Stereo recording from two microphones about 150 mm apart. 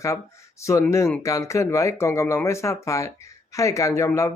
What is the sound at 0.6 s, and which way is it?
Speech, 20° left (ahead or behind).